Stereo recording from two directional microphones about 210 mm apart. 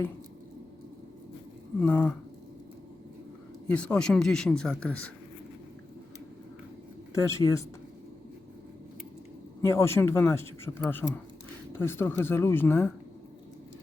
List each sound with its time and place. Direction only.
1.8 s speech: 5° left (ahead or behind)
3.7 s speech: 5° left (ahead or behind)
7.1 s speech: 15° left (ahead or behind)
9.6 s speech: 15° left (ahead or behind)